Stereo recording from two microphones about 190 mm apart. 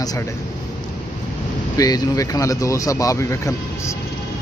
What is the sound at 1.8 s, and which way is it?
Speech, 20° left (ahead or behind).